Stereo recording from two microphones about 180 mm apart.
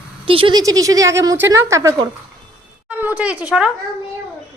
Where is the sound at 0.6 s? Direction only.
20° right (ahead or behind).